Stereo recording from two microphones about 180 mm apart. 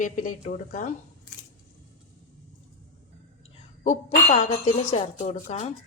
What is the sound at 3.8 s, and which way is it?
Speech, 40° left (ahead or behind).